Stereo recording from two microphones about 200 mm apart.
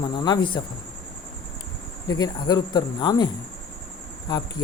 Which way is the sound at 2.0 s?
20° left (ahead or behind).